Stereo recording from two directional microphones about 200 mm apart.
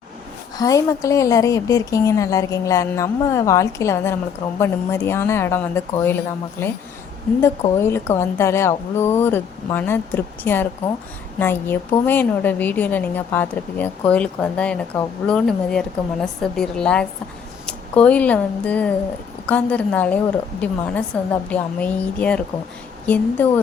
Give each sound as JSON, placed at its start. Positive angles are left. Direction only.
{"t": 0.5, "sound": "a woman's voice", "side_deg": 15}